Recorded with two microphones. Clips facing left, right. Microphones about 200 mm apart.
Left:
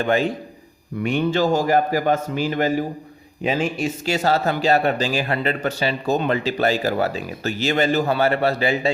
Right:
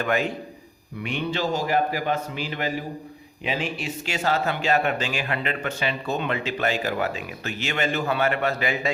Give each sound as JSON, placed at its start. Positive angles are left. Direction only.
{"t": 0.0, "sound": "speech", "side_deg": 30}
{"t": 1.0, "sound": "a man's voice", "side_deg": 45}